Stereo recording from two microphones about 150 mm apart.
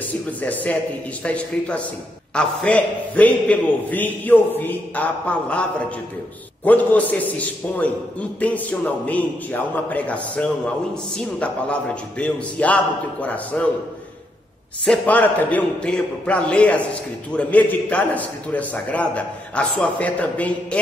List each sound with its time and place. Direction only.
0.4 s a man's voice: 10° left (ahead or behind)
14.9 s a man's voice: 10° left (ahead or behind)